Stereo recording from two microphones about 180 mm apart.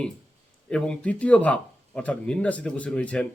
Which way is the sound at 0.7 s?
5° left (ahead or behind).